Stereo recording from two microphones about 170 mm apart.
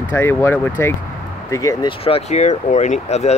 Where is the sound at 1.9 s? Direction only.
35° left (ahead or behind).